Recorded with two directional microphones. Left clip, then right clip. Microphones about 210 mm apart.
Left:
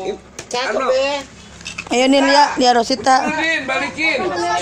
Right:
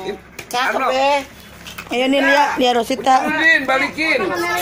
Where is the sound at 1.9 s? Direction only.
25° left (ahead or behind).